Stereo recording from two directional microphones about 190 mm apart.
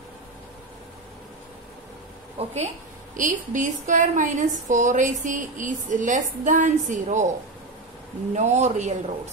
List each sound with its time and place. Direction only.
2.3 s a woman's voice: 35° right (ahead or behind)
8.4 s a woman's voice: 35° right (ahead or behind)